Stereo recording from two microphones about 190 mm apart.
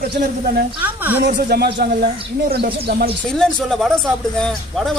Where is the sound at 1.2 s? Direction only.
55° right (ahead or behind).